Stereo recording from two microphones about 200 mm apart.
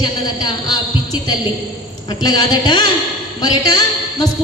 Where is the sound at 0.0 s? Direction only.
20° left (ahead or behind).